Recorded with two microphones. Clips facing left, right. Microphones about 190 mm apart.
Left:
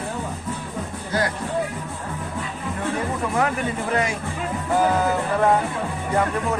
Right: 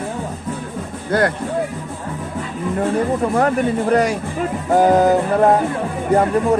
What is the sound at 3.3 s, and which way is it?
Music, 40° right (ahead or behind).